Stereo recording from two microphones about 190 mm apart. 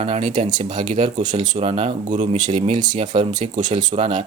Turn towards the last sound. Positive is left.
turn(degrees=-30)  # may be behind; listen again after turning